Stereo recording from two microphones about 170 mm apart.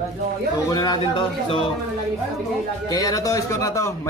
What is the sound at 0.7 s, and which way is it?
Speech, 25° left (ahead or behind).